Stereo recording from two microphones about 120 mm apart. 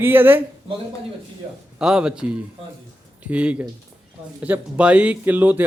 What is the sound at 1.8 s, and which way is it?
Speech, 5° right (ahead or behind).